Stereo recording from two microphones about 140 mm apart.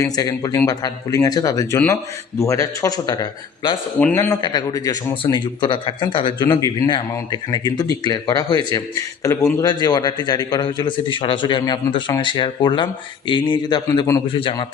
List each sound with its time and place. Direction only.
0.0 s speech: 25° left (ahead or behind)
4.0 s speech: 15° left (ahead or behind)
4.4 s speech: 30° left (ahead or behind)